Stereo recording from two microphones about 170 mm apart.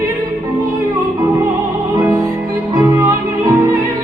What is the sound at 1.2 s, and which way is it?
Music, 15° right (ahead or behind).